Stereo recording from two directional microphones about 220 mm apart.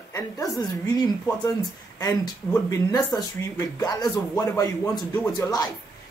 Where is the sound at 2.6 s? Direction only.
15° left (ahead or behind).